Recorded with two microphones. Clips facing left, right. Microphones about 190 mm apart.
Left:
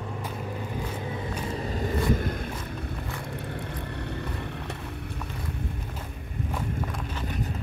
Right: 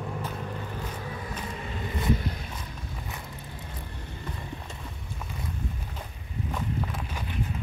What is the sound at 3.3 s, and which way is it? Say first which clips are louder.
Vehicle: left 7 dB; 65° left (ahead or behind).